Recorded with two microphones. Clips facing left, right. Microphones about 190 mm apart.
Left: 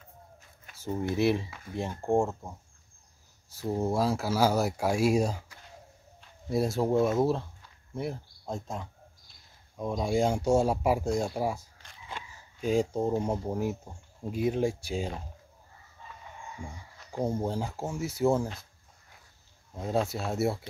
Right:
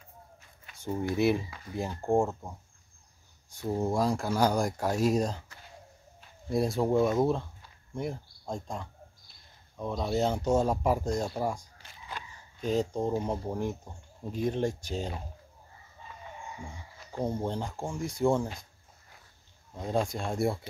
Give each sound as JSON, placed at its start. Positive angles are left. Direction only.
{"t": 0.7, "sound": "speech", "side_deg": 5}
{"t": 12.1, "sound": "a sound", "side_deg": 25}
{"t": 12.5, "sound": "speech", "side_deg": 10}
{"t": 17.1, "sound": "speech", "side_deg": 10}
{"t": 19.7, "sound": "speech", "side_deg": 5}